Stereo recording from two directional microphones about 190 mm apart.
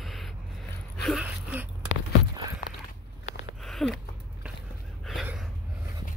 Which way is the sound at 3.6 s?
Centre (ahead or behind).